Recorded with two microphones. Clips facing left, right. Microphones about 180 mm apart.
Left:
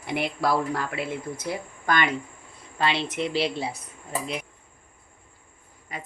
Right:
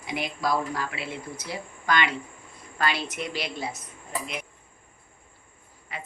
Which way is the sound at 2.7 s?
25° left (ahead or behind).